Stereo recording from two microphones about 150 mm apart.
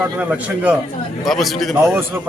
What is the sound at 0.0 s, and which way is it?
A man's voice, 10° right (ahead or behind).